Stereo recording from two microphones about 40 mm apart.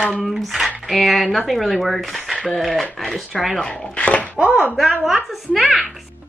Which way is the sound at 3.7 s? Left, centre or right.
Left.